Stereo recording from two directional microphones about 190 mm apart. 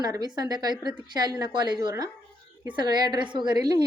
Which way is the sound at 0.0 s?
20° right (ahead or behind).